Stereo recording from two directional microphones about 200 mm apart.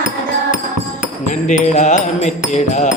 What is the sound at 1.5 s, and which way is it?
Music, 35° left (ahead or behind).